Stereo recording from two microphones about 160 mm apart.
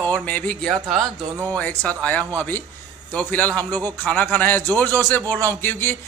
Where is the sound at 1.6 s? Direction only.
10° left (ahead or behind).